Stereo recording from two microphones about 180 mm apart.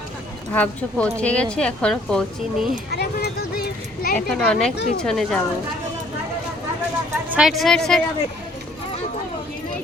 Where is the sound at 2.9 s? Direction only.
65° left (ahead or behind).